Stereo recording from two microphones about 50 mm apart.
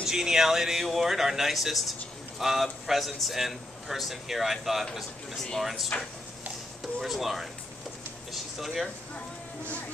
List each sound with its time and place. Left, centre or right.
0.0 s speech: centre
5.4 s speech: centre
5.9 s speech: left
6.8 s speech: centre